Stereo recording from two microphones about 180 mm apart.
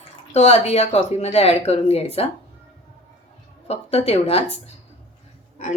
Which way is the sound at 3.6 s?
35° left (ahead or behind).